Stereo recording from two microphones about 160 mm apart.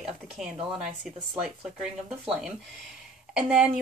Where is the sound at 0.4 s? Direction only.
5° right (ahead or behind).